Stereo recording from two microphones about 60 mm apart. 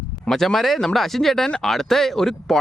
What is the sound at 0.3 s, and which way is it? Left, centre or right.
Speech, centre.